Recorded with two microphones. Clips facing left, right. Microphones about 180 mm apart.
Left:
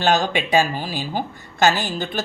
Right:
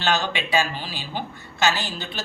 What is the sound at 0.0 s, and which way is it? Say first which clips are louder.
A woman's voice: left 5 dB; 45° left (ahead or behind).